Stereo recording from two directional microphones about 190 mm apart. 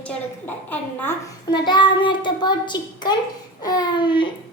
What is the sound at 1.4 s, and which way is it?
Child singing, 25° left (ahead or behind).